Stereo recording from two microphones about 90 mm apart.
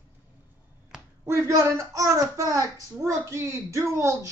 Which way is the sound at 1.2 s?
30° right (ahead or behind).